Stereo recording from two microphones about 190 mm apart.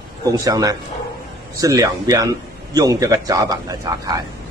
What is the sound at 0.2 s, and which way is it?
Speech, 20° right (ahead or behind).